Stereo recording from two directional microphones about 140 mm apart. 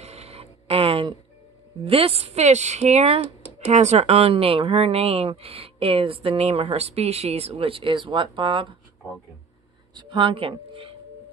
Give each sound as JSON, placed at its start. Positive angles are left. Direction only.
{"t": 0.0, "sound": "a sound", "side_deg": -50}
{"t": 1.9, "sound": "speech", "side_deg": -40}
{"t": 9.9, "sound": "speech", "side_deg": -35}